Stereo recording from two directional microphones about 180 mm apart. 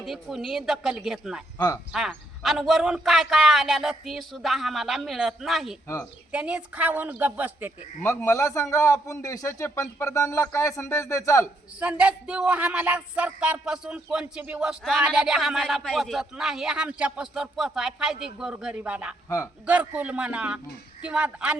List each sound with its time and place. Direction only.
0.0 s speech: centre (ahead or behind)
1.5 s speech: 20° left (ahead or behind)
1.9 s speech: centre (ahead or behind)
8.0 s a man's voice: 15° left (ahead or behind)
11.8 s speech: 5° right (ahead or behind)